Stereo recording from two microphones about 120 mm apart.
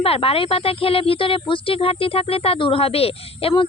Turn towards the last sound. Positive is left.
turn(degrees=55)  # may be behind; listen again after turning